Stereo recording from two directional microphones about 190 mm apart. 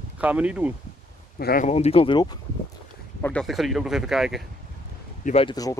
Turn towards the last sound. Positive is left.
turn(degrees=20)  # may be behind; listen again after turning